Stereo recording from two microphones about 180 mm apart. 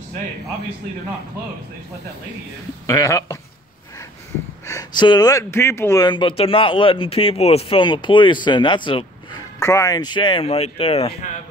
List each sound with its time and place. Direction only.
2.9 s speech: 20° left (ahead or behind)
4.6 s speech: 20° left (ahead or behind)
9.6 s speech: 15° left (ahead or behind); by 11.3 s 35° left (ahead or behind)